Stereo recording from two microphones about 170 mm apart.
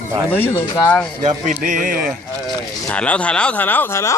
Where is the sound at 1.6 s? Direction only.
50° right (ahead or behind).